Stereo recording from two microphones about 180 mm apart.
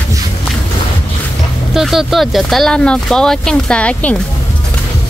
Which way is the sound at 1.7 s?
Centre (ahead or behind).